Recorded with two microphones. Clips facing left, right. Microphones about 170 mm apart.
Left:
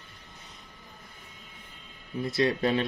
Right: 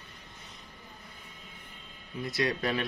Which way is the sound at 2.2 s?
25° left (ahead or behind).